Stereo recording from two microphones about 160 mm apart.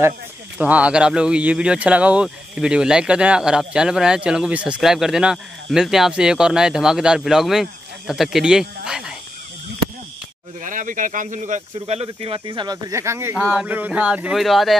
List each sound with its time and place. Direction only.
0.6 s speech: 10° right (ahead or behind)
10.6 s speech: 55° right (ahead or behind); by 14.8 s centre (ahead or behind)